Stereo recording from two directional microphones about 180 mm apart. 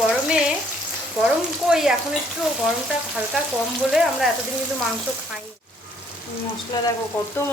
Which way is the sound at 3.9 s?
Centre (ahead or behind).